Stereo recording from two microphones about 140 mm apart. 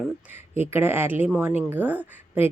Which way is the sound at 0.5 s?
15° right (ahead or behind).